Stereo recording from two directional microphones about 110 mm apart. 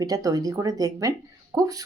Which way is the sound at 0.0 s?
35° right (ahead or behind).